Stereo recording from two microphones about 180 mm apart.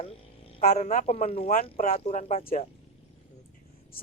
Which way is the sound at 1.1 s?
35° left (ahead or behind).